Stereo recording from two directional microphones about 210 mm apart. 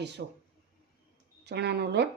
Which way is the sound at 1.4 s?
50° right (ahead or behind).